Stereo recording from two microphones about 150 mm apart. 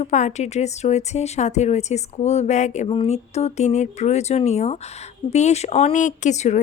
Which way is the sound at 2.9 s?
40° left (ahead or behind).